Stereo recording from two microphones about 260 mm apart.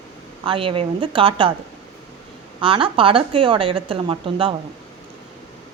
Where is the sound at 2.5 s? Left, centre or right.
Centre.